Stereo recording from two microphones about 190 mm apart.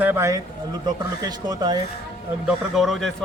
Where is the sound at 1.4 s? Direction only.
20° right (ahead or behind).